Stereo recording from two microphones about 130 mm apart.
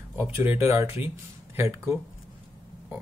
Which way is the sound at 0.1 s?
20° right (ahead or behind).